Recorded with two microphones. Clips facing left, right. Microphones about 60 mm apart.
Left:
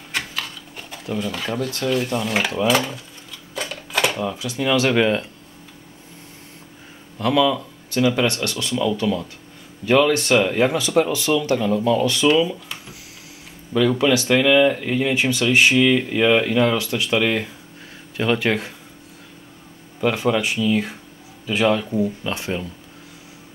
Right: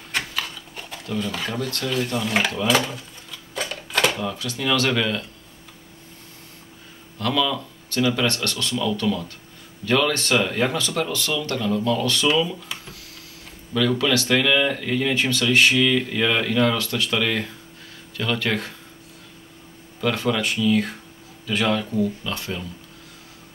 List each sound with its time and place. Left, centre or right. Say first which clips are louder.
0.1 s a sound: even; centre
1.0 s speech: left 2 dB; centre
1.3 s speech: left 2 dB; centre
3.5 s typewriter: even; centre
4.2 s speech: left 3 dB; centre
7.2 s speech: left 5 dB; centre
13.7 s speech: left 3 dB; centre
20.0 s speech: left 3 dB; left